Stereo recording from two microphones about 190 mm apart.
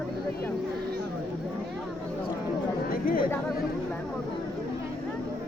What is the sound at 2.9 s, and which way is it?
Chatter, 50° left (ahead or behind).